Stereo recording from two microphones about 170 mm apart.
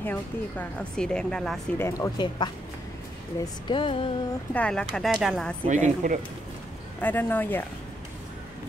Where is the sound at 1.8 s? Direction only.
15° left (ahead or behind).